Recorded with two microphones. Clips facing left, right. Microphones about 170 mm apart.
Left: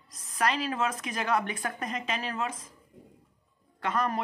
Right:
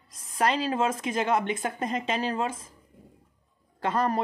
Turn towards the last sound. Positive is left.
turn(degrees=-30)  # may be behind; listen again after turning